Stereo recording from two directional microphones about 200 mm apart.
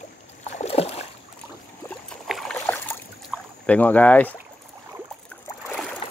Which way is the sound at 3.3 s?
5° left (ahead or behind).